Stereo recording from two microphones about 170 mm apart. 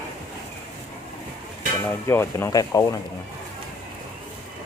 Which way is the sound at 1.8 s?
15° left (ahead or behind).